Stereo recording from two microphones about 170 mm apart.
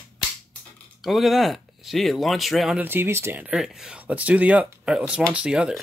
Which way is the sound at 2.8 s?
15° right (ahead or behind).